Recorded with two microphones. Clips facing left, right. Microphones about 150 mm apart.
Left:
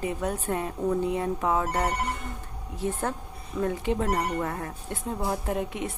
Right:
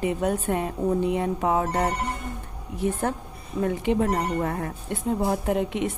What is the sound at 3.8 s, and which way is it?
Speech, 15° right (ahead or behind).